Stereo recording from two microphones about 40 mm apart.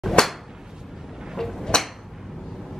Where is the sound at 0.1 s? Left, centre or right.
Centre.